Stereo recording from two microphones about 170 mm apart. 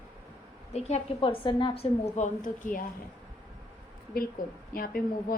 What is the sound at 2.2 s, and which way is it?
Speech, 45° left (ahead or behind).